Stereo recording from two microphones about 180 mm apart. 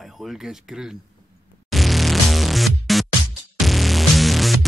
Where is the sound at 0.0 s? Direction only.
Centre (ahead or behind).